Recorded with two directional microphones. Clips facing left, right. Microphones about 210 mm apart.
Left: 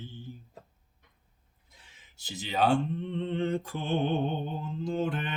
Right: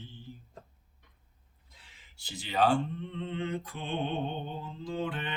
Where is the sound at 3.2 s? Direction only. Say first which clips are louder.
Left 4 dB; 45° left (ahead or behind).